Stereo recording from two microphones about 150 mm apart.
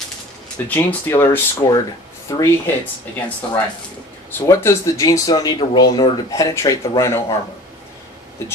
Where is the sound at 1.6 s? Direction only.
35° left (ahead or behind).